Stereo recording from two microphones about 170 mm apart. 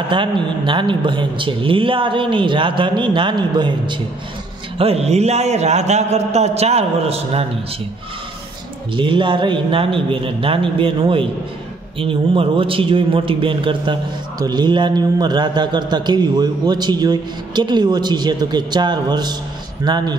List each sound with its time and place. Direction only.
0.1 s a man's voice: 30° right (ahead or behind)
8.9 s a man's voice: 30° right (ahead or behind)